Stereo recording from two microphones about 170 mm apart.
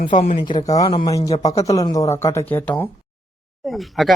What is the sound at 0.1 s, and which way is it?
Speech, 35° left (ahead or behind).